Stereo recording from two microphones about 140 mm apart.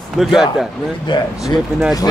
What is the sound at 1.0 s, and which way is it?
Speech, 35° left (ahead or behind).